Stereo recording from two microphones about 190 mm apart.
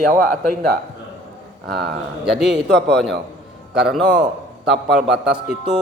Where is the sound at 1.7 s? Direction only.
60° right (ahead or behind).